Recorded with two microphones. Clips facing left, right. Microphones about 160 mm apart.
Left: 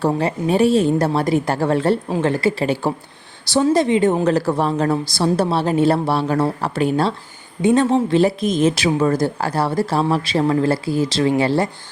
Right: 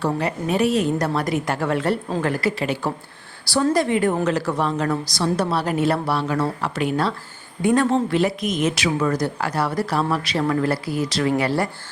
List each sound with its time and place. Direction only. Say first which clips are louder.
0.0 s a woman's voice: left 4 dB; 25° left (ahead or behind)
4.3 s a woman's voice: left 4 dB; 35° left (ahead or behind)